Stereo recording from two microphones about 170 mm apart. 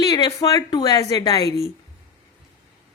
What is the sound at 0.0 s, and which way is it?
A woman's voice, 20° left (ahead or behind).